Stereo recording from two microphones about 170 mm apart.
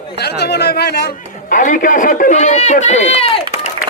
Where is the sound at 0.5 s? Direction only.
70° left (ahead or behind).